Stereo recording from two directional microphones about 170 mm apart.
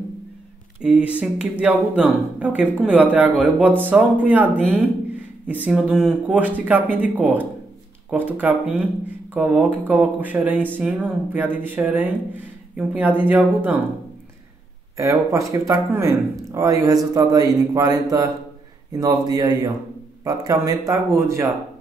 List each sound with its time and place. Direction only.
0.8 s speech: 5° right (ahead or behind)
15.0 s speech: 20° right (ahead or behind)